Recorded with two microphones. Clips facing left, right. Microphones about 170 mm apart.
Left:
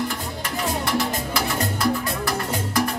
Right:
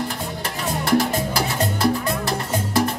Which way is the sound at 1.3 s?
30° right (ahead or behind).